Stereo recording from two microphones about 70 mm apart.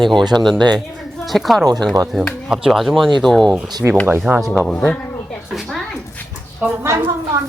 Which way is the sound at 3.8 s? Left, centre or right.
Right.